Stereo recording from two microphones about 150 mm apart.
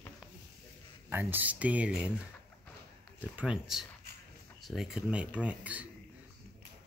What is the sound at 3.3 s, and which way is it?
Speech, 5° right (ahead or behind).